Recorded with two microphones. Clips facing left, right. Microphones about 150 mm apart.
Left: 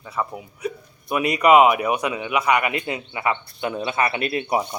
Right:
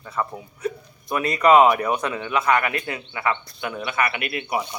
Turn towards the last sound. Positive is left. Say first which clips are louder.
# left 4 dB
turn(degrees=30)  # may be behind; listen again after turning